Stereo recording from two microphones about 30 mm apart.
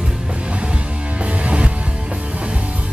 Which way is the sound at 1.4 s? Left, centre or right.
Right.